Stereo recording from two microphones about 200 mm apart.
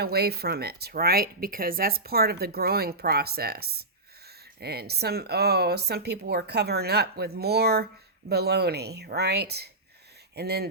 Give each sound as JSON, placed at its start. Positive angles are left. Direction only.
{"t": 0.0, "sound": "speech", "side_deg": -50}